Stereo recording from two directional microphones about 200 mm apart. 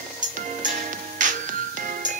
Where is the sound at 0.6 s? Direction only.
40° right (ahead or behind).